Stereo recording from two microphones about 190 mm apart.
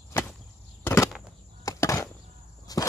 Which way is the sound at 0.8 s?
15° left (ahead or behind).